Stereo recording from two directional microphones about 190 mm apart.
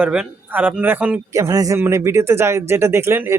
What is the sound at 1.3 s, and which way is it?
Speech, 15° right (ahead or behind).